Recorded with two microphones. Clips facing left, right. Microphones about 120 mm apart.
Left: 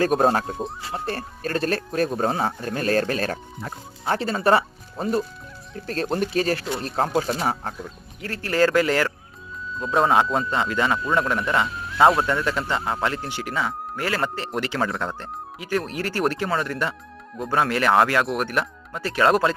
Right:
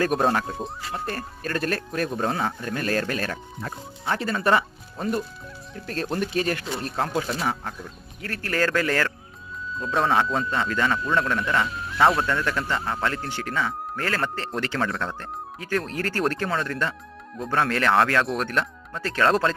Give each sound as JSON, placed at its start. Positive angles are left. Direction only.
{"t": 0.0, "sound": "speech", "side_deg": 35}
{"t": 0.8, "sound": "speech", "side_deg": 25}
{"t": 8.2, "sound": "a man's voice", "side_deg": 20}